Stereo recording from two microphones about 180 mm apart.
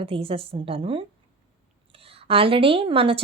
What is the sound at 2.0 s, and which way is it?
A woman's voice, 30° right (ahead or behind).